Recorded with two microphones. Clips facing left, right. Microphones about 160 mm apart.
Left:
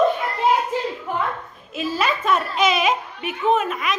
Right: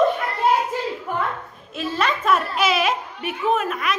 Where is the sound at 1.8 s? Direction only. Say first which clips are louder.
Left 1 dB; 5° left (ahead or behind).